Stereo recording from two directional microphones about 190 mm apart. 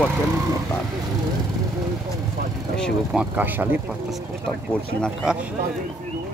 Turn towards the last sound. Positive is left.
turn(degrees=0)  # may be behind; listen again after turning